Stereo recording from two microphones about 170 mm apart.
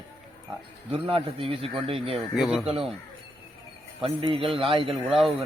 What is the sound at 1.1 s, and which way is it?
A man's voice, 30° right (ahead or behind).